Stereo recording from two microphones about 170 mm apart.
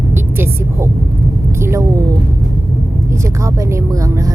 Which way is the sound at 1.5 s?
15° right (ahead or behind).